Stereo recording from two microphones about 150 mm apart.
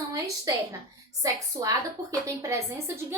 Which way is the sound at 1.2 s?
20° right (ahead or behind).